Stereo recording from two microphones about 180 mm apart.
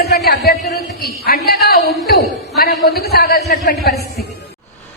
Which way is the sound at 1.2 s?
60° left (ahead or behind).